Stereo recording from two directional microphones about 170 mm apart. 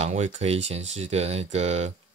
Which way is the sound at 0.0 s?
45° right (ahead or behind).